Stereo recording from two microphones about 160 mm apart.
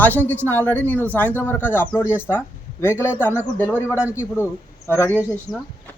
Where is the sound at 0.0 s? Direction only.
10° left (ahead or behind).